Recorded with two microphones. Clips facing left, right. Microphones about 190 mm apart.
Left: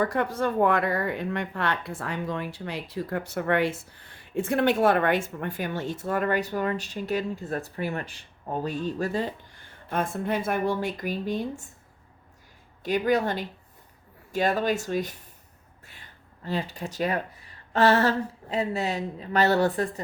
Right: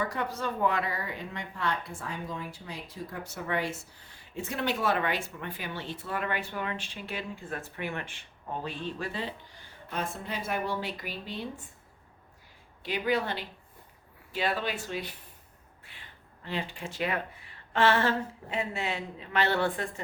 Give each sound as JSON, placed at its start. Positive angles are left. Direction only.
{"t": 0.0, "sound": "speech", "side_deg": 50}
{"t": 12.8, "sound": "speech", "side_deg": 45}